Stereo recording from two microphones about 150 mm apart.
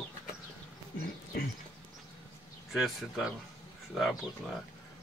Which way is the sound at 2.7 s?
Centre (ahead or behind).